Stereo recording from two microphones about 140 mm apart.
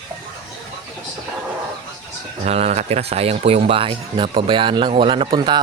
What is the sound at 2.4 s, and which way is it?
Speech, 50° right (ahead or behind).